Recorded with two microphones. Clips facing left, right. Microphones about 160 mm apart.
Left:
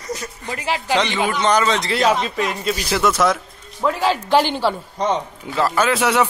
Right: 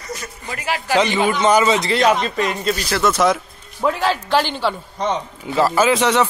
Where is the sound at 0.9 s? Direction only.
5° right (ahead or behind); by 4.5 s 15° left (ahead or behind).